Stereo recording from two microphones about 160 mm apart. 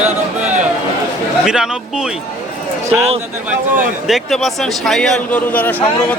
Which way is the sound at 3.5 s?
5° right (ahead or behind).